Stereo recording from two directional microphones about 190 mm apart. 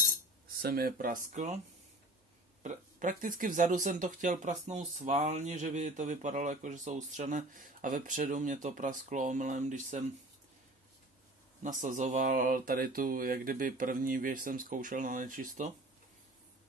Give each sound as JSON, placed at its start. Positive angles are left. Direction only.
{"t": 0.6, "sound": "speech", "side_deg": -50}
{"t": 2.6, "sound": "speech", "side_deg": -40}
{"t": 11.6, "sound": "speech", "side_deg": -40}